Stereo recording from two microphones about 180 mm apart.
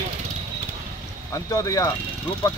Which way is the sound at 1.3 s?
20° left (ahead or behind).